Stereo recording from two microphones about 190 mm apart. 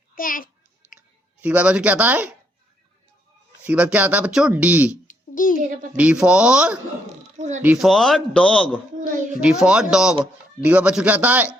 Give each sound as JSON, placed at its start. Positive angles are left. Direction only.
{"t": 0.2, "sound": "babbling", "side_deg": 45}
{"t": 0.9, "sound": "speech", "side_deg": -5}
{"t": 3.6, "sound": "speech", "side_deg": -5}
{"t": 5.0, "sound": "babbling", "side_deg": 45}
{"t": 6.0, "sound": "a man's voice", "side_deg": -5}
{"t": 7.3, "sound": "speech", "side_deg": -40}
{"t": 7.6, "sound": "a man's voice", "side_deg": -5}